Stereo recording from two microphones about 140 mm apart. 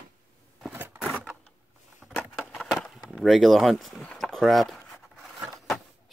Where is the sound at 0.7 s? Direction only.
15° right (ahead or behind).